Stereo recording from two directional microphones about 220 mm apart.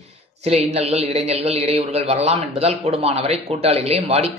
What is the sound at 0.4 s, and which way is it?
A man's voice, 30° right (ahead or behind).